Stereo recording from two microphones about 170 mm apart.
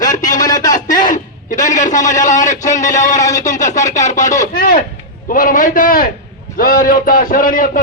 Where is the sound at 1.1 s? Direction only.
50° left (ahead or behind).